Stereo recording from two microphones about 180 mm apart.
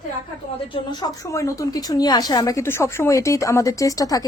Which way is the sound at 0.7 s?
20° left (ahead or behind).